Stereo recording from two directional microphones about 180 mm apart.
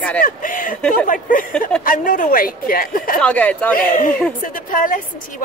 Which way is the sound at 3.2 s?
10° left (ahead or behind).